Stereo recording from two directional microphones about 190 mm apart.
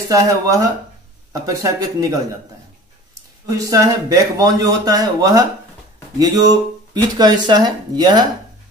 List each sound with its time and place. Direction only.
0.1 s speech: 15° right (ahead or behind)
3.4 s speech: 20° right (ahead or behind)